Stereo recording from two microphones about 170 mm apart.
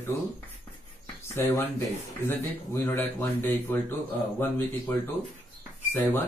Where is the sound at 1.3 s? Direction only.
15° left (ahead or behind).